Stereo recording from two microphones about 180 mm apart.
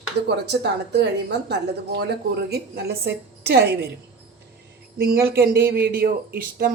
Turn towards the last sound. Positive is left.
turn(degrees=-60)  # may be behind; listen again after turning